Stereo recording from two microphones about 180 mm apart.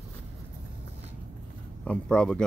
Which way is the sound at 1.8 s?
5° left (ahead or behind).